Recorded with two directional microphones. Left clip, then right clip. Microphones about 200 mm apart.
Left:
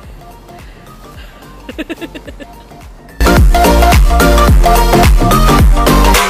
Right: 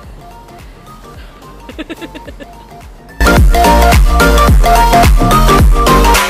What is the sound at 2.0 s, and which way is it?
Speech, 20° left (ahead or behind).